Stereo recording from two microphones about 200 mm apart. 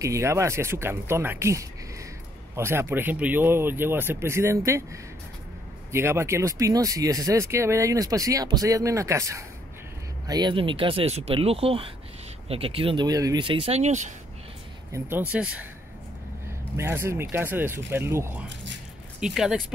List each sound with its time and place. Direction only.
0.0 s speech: 15° right (ahead or behind)
5.9 s speech: 15° right (ahead or behind); by 14.1 s 35° right (ahead or behind)
14.9 s speech: 10° right (ahead or behind)
16.7 s speech: 10° right (ahead or behind)